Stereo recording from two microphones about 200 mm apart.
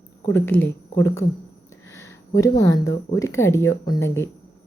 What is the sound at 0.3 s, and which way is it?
Speech, 10° left (ahead or behind).